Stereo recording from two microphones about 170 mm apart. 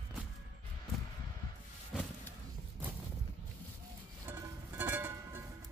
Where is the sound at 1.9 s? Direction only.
Centre (ahead or behind).